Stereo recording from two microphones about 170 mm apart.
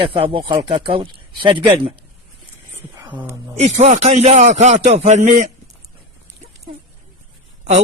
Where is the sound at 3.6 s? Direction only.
40° right (ahead or behind).